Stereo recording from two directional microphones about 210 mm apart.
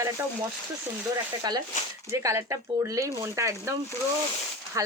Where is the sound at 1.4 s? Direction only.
20° right (ahead or behind).